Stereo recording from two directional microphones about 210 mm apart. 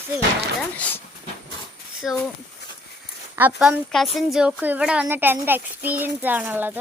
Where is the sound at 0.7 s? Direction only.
5° left (ahead or behind).